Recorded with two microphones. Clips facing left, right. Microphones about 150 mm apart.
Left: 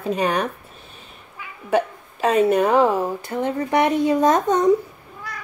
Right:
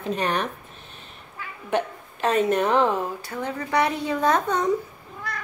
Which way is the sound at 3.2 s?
20° left (ahead or behind).